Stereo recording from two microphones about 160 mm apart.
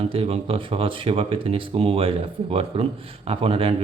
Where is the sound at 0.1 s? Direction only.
35° right (ahead or behind).